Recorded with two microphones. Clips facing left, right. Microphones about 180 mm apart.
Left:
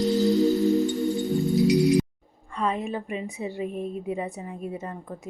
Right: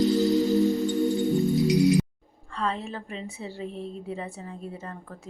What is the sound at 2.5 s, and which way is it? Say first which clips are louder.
A woman's voice: left 3 dB; 15° left (ahead or behind).